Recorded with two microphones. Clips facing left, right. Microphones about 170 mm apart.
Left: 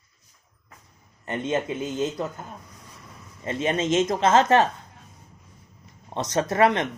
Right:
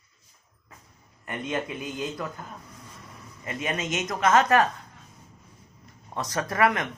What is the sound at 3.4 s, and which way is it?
Speech, 30° left (ahead or behind).